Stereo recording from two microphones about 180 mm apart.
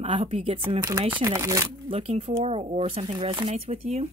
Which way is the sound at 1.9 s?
30° right (ahead or behind).